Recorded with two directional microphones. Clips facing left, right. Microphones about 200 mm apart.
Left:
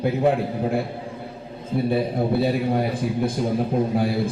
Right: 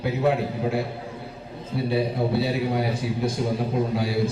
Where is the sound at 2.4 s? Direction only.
50° left (ahead or behind).